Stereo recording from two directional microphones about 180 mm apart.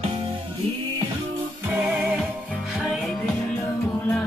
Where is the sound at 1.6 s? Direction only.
10° right (ahead or behind).